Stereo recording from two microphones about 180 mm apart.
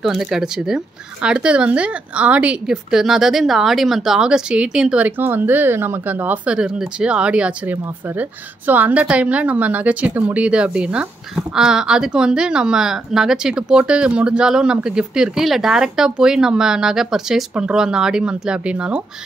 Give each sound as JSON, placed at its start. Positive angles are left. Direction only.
{"t": 0.0, "sound": "speech", "side_deg": 0}